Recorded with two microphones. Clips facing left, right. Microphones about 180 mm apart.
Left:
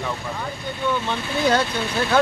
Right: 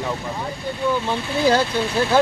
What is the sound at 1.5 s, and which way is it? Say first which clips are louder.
Speech: right 3 dB; 30° right (ahead or behind).